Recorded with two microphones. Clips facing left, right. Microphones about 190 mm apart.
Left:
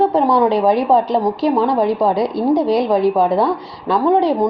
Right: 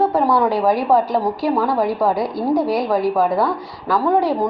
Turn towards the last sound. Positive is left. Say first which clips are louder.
# left 3 dB
turn(degrees=20)  # may be behind; listen again after turning